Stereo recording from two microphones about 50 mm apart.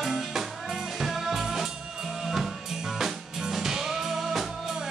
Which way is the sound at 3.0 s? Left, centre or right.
Centre.